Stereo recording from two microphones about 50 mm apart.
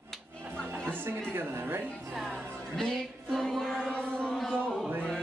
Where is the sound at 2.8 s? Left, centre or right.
Centre.